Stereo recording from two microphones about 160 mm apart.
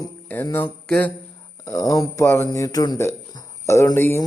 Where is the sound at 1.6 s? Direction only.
20° left (ahead or behind).